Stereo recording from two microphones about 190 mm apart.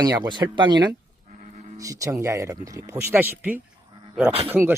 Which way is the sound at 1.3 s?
40° right (ahead or behind).